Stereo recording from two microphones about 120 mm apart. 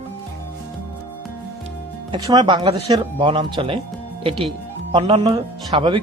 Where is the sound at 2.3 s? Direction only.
35° right (ahead or behind).